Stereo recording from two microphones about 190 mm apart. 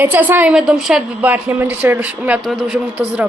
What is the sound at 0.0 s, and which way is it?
A woman's voice, 10° right (ahead or behind).